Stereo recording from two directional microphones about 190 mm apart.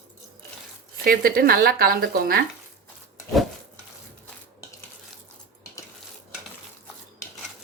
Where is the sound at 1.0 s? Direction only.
50° right (ahead or behind).